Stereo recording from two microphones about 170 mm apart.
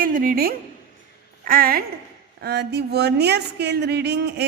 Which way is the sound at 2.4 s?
80° right.